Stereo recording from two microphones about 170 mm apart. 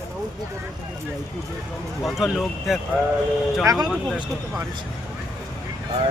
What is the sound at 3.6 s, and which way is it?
Speech, 20° right (ahead or behind).